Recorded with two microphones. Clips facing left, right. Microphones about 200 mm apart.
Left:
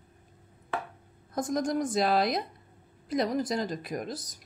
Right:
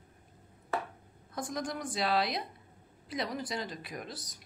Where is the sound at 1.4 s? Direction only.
45° left (ahead or behind).